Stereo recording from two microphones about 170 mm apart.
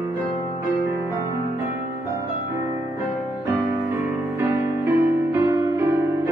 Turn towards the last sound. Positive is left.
turn(degrees=-15)  # may be behind; listen again after turning